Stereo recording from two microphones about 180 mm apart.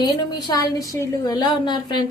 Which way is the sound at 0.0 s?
20° left (ahead or behind).